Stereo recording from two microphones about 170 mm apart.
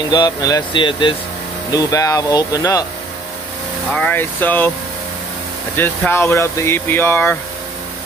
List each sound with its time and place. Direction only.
0.1 s speech: 25° left (ahead or behind)
3.9 s speech: 10° left (ahead or behind)
5.8 s speech: 15° left (ahead or behind)